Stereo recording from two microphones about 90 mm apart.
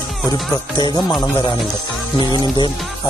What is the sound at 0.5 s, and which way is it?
Speech, 55° left (ahead or behind).